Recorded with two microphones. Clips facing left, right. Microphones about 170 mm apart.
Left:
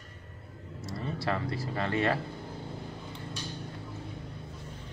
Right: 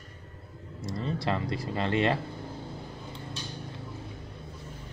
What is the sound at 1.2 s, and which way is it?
Speech, 20° right (ahead or behind).